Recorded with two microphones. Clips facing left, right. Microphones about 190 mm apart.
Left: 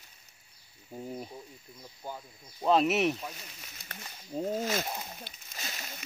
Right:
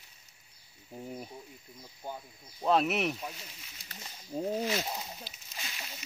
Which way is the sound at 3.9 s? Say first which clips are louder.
Left 3 dB; 60° left (ahead or behind).